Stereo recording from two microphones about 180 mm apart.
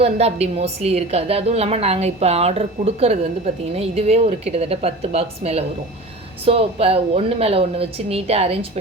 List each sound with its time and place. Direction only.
0.0 s a woman's voice: 35° right (ahead or behind)